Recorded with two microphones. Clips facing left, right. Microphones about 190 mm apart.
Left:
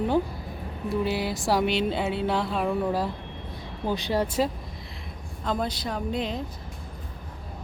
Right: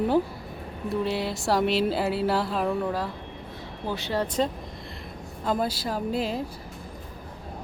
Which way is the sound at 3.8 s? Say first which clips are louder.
Left 2 dB; 15° left (ahead or behind).